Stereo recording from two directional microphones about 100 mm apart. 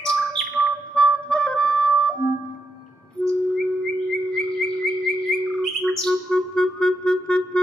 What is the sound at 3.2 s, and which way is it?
Bird, 10° left (ahead or behind).